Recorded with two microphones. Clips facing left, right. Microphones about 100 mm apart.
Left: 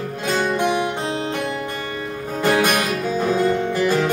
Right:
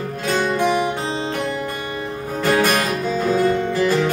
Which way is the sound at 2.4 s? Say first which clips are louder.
Even; 15° left (ahead or behind).